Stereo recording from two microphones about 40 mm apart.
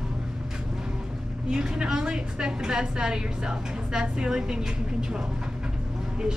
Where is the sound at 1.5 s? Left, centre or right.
Right.